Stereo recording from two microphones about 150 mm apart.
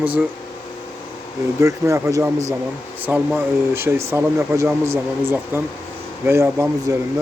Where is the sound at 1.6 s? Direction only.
20° right (ahead or behind).